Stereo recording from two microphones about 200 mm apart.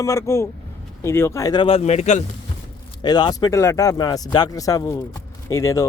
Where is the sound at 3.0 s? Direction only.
20° left (ahead or behind).